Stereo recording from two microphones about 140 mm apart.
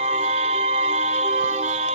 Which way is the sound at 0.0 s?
50° right (ahead or behind).